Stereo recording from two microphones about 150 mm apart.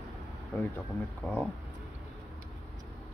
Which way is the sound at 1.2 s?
5° left (ahead or behind).